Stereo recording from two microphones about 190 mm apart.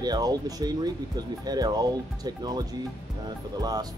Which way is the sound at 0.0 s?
20° right (ahead or behind).